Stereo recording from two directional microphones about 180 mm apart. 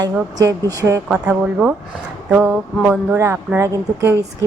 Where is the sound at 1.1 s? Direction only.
5° right (ahead or behind).